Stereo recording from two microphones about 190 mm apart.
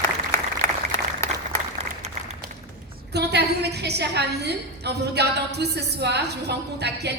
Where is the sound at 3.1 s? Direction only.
60° right (ahead or behind).